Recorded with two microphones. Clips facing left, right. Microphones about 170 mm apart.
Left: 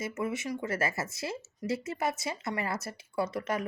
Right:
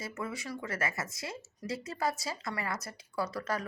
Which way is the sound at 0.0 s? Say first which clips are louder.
Left 5 dB; 20° left (ahead or behind).